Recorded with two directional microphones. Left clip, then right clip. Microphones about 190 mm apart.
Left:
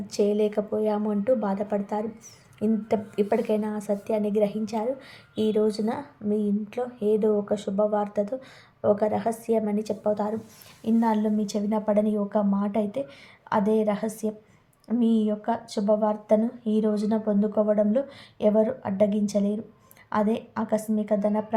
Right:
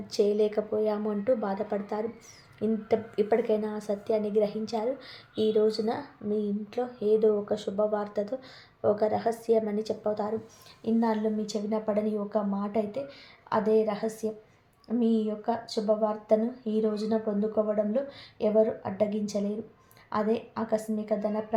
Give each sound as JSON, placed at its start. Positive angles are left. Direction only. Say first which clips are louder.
{"t": 0.1, "sound": "speech", "louder": "left 1 dB", "side_deg": 20}